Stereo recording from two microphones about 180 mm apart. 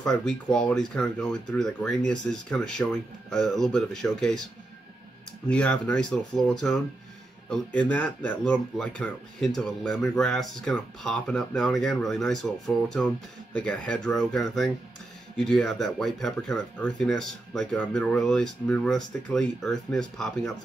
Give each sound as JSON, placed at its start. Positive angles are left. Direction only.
{"t": 0.0, "sound": "speech", "side_deg": 5}
{"t": 5.5, "sound": "speech", "side_deg": 5}